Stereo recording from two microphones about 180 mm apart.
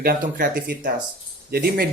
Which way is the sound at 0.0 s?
50° right (ahead or behind).